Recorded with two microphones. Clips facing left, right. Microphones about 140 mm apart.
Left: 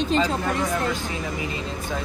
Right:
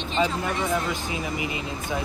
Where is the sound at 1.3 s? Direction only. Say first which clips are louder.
Even; 20° right (ahead or behind).